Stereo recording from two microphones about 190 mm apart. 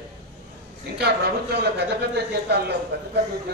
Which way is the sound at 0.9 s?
60° right (ahead or behind).